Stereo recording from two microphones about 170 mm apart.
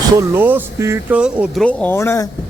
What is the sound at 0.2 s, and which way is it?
Speech, 10° right (ahead or behind).